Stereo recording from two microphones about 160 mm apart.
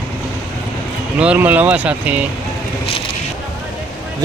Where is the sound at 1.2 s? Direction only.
10° right (ahead or behind).